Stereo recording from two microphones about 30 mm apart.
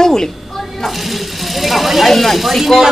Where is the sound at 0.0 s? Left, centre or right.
Centre.